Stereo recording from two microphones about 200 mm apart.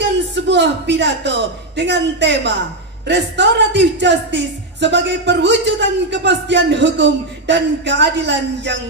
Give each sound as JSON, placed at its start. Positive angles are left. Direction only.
{"t": 0.0, "sound": "a man's voice", "side_deg": -60}